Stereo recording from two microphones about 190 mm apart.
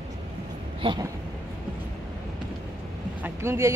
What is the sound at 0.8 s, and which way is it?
Speech, 25° right (ahead or behind).